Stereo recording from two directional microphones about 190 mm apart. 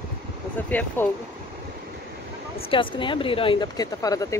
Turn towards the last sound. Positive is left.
turn(degrees=20)  # may be behind; listen again after turning